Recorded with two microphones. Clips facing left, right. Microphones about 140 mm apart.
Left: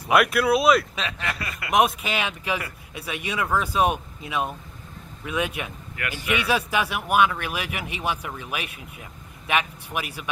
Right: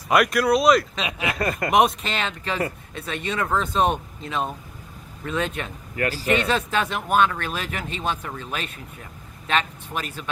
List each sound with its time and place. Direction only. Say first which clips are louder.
0.1 s speech: right 1 dB; 5° left (ahead or behind)
1.3 s speech: right 9 dB; 45° right (ahead or behind)
1.7 s speech: even; centre (ahead or behind)
5.9 s a man's voice: right 7 dB; 35° right (ahead or behind)
6.3 s speech: even; 10° left (ahead or behind)